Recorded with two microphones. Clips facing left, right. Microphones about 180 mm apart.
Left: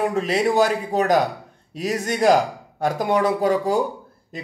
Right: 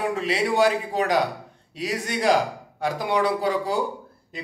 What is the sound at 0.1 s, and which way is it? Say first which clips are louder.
A man's voice: left 4 dB; 45° left (ahead or behind).